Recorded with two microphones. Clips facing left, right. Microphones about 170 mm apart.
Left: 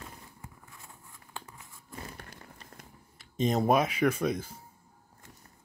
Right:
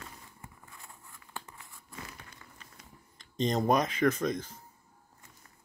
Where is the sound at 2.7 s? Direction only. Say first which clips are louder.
Left 6 dB; 50° left (ahead or behind).